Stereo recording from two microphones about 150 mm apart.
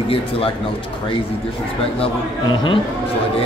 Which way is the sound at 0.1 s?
40° left (ahead or behind).